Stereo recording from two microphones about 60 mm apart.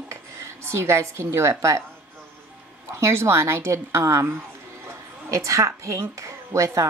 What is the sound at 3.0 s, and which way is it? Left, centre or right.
A woman's voice, right.